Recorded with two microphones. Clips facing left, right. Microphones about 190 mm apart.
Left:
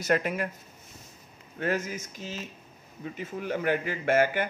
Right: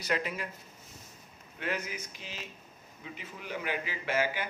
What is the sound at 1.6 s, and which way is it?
Speech, 45° left (ahead or behind).